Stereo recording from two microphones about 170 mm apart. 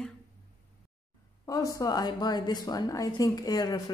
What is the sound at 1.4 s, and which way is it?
A woman's voice, 20° left (ahead or behind).